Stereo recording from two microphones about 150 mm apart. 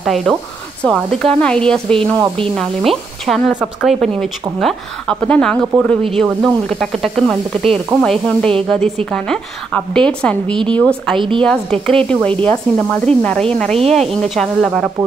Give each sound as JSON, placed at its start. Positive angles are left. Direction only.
{"t": 0.0, "sound": "speech", "side_deg": 0}
{"t": 11.1, "sound": "a woman's voice", "side_deg": -35}
{"t": 11.4, "sound": "speech", "side_deg": 5}